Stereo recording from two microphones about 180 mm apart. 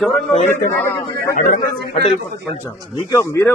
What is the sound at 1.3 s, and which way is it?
Speech, 50° left (ahead or behind).